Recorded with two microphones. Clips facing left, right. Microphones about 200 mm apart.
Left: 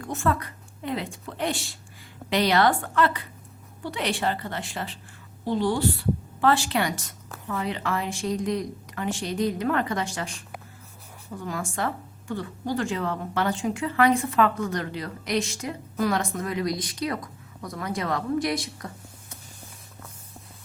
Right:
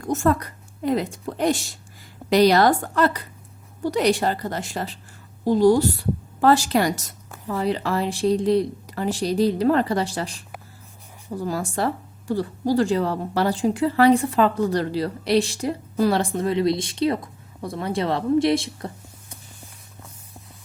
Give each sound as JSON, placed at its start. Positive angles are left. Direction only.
{"t": 0.0, "sound": "speech", "side_deg": -40}